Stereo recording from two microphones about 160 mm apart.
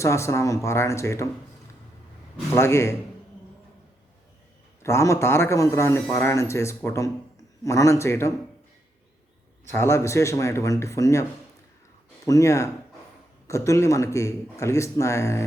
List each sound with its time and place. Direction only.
0.0 s a man's voice: 20° left (ahead or behind)
2.6 s a man's voice: 15° left (ahead or behind)
4.8 s a man's voice: 15° left (ahead or behind)
9.7 s a man's voice: 15° left (ahead or behind)